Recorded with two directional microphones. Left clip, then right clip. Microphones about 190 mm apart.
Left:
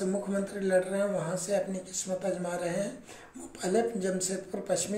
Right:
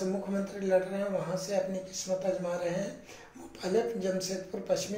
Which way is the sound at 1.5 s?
20° left (ahead or behind).